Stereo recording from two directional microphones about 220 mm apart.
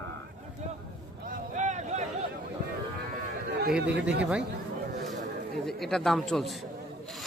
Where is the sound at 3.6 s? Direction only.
45° right (ahead or behind).